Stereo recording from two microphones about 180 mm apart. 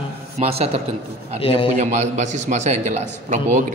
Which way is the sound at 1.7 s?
40° right (ahead or behind).